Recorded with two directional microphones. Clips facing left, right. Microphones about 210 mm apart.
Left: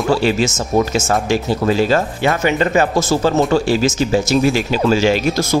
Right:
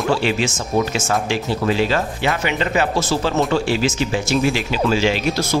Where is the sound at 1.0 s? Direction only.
45° left (ahead or behind).